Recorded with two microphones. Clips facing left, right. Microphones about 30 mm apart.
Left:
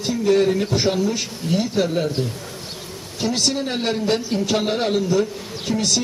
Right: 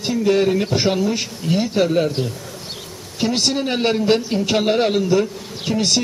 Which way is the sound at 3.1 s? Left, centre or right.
Right.